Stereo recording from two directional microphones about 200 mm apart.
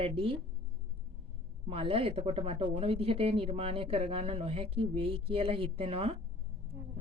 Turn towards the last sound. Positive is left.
turn(degrees=-30)  # may be behind; listen again after turning